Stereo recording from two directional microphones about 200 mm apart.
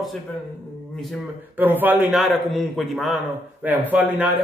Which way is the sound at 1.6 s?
10° right (ahead or behind).